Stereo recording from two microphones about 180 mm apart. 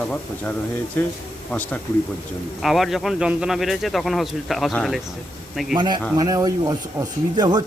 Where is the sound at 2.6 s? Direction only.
Centre (ahead or behind).